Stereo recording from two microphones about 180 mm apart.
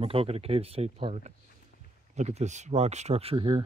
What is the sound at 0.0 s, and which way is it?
Speech, 30° right (ahead or behind).